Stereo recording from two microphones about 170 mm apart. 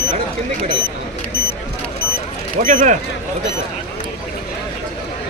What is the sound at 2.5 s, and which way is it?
Speech, 50° right (ahead or behind).